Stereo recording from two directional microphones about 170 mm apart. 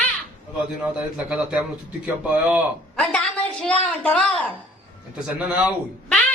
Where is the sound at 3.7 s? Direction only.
5° left (ahead or behind).